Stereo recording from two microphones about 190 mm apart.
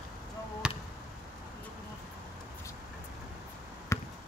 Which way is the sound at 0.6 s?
5° right (ahead or behind).